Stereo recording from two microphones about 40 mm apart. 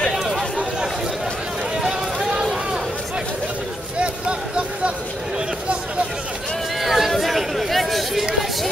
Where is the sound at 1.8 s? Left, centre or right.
Centre.